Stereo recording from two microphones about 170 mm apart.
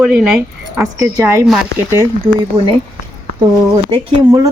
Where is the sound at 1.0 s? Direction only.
15° right (ahead or behind).